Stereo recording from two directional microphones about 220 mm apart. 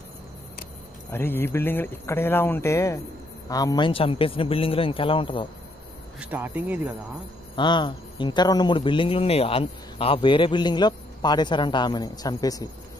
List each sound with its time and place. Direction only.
1.1 s speech: 10° left (ahead or behind)
6.1 s speech: 5° right (ahead or behind)
7.5 s speech: 20° left (ahead or behind)